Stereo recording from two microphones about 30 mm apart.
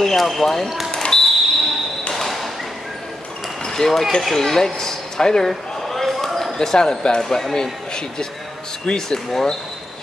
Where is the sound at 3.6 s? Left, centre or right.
Centre.